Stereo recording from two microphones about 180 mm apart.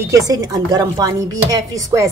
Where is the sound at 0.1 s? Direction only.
20° right (ahead or behind).